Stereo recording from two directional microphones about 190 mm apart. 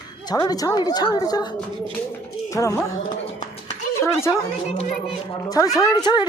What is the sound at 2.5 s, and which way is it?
Speech, 15° left (ahead or behind).